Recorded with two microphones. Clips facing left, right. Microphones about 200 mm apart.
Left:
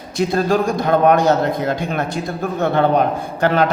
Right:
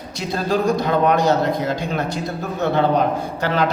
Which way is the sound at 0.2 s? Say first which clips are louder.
Left 4 dB; 50° left (ahead or behind).